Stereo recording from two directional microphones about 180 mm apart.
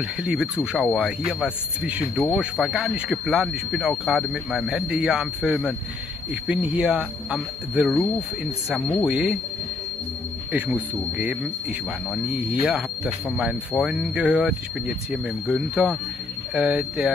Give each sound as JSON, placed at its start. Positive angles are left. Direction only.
{"t": 0.2, "sound": "speech", "side_deg": -5}
{"t": 10.5, "sound": "speech", "side_deg": -5}